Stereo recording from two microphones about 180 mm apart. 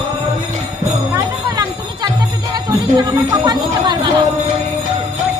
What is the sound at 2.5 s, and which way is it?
Speech, 20° right (ahead or behind).